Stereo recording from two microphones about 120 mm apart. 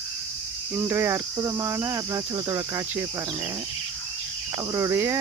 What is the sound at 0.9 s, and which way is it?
Cricket, 20° right (ahead or behind).